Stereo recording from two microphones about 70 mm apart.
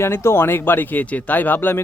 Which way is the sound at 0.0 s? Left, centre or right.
Left.